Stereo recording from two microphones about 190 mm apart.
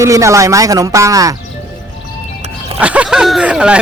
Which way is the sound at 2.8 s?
5° right (ahead or behind).